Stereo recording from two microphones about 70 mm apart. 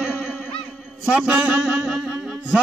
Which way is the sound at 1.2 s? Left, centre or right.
Centre.